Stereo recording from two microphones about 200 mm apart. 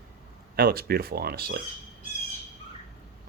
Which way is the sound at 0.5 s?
50° right (ahead or behind).